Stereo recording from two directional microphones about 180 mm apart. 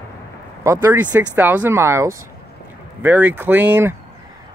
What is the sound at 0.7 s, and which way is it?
Speech, 10° right (ahead or behind).